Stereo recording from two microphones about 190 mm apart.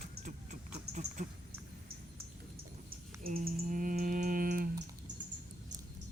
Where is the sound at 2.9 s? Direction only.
50° right (ahead or behind).